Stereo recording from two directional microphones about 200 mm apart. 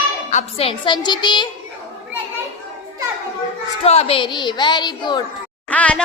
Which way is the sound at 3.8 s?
30° left (ahead or behind).